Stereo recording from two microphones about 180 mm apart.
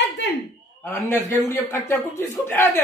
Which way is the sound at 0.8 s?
15° left (ahead or behind).